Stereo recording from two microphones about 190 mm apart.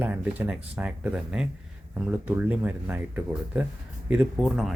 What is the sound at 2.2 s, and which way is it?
Speech, 10° right (ahead or behind).